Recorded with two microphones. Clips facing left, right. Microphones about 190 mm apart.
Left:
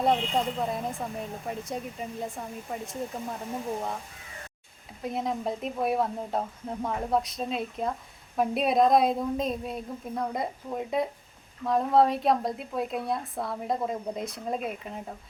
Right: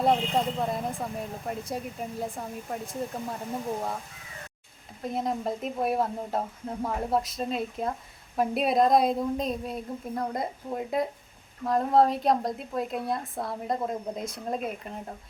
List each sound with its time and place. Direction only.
0.0 s a woman's voice: centre (ahead or behind)
5.0 s a woman's voice: centre (ahead or behind)